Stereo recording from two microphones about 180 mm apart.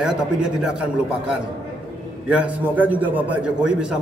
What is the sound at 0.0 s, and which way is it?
A man's voice, 5° right (ahead or behind).